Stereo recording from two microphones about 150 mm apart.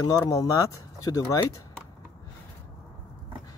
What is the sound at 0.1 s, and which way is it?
Speech, 20° left (ahead or behind).